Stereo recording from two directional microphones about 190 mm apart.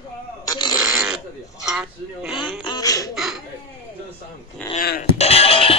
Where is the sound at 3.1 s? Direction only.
Centre (ahead or behind).